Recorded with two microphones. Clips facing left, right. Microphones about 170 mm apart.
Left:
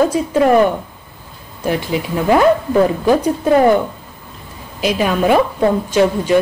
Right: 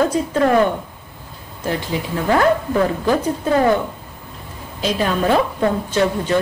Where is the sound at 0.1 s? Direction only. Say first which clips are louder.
Left 3 dB; 10° left (ahead or behind).